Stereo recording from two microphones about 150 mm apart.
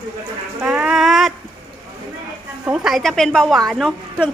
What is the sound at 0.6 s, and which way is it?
Speech, 5° right (ahead or behind).